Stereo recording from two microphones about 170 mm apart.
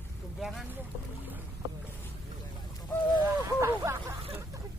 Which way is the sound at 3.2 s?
15° right (ahead or behind).